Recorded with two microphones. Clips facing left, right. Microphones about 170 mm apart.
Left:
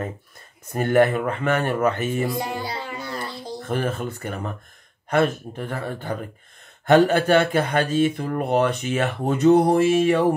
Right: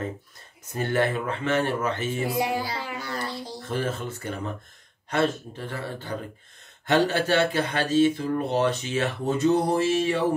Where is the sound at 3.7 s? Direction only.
55° left (ahead or behind).